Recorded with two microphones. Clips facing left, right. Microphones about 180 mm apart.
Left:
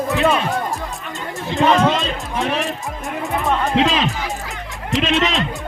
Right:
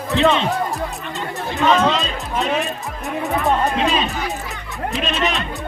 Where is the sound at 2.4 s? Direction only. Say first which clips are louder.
Right 1 dB; 20° right (ahead or behind).